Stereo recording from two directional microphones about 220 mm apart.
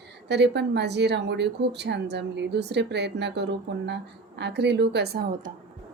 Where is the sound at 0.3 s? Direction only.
50° right (ahead or behind).